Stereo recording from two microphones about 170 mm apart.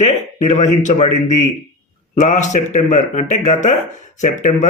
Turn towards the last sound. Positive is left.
turn(degrees=45)  # may be behind; listen again after turning